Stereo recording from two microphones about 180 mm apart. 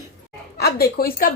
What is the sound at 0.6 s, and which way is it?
Speech, 60° left (ahead or behind).